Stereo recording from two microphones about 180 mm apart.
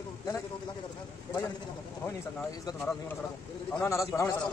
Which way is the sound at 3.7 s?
15° left (ahead or behind).